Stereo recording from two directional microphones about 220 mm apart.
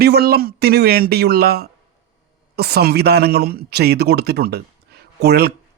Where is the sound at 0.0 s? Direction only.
45° right (ahead or behind).